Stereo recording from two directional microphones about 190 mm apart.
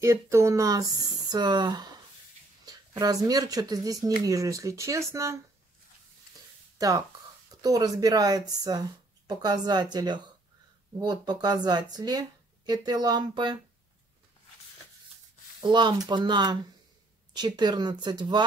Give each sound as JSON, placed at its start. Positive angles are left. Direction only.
{"t": 0.0, "sound": "speech", "side_deg": -15}
{"t": 7.6, "sound": "speech", "side_deg": -20}
{"t": 15.6, "sound": "speech", "side_deg": -20}